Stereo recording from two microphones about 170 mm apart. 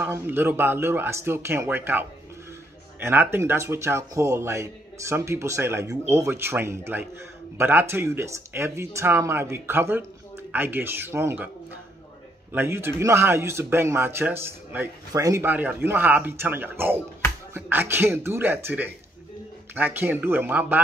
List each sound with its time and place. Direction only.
0.0 s speech: 15° right (ahead or behind)
12.5 s speech: 15° right (ahead or behind)